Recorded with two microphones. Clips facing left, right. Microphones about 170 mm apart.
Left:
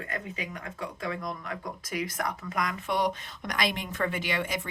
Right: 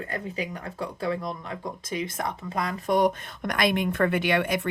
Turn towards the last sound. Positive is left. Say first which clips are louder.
# right 7 dB
turn(degrees=-60)  # may be behind; listen again after turning